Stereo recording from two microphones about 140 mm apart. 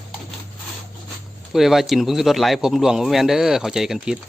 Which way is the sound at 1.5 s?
Centre (ahead or behind).